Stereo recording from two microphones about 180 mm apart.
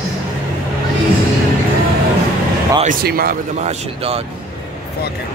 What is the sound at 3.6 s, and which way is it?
Speech, 35° right (ahead or behind).